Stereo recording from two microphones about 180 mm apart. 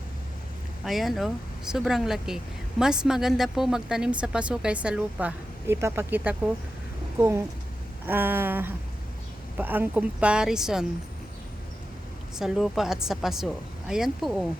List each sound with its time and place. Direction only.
0.9 s a woman's voice: centre (ahead or behind)
12.4 s a woman's voice: centre (ahead or behind)